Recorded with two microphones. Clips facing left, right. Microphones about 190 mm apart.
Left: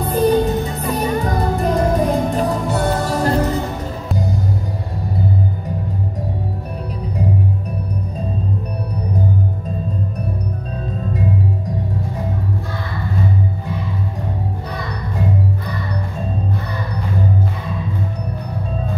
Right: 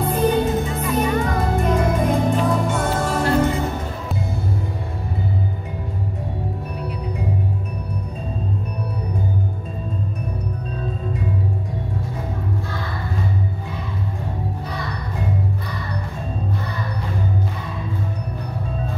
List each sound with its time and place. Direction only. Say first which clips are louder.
0.0 s music: left 3 dB; 35° left (ahead or behind)